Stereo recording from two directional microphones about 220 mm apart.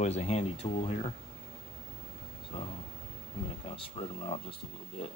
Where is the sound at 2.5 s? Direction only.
25° left (ahead or behind).